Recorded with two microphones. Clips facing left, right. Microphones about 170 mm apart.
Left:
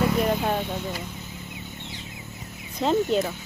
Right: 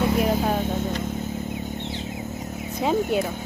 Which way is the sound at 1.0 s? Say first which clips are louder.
Right 10 dB; 45° right (ahead or behind).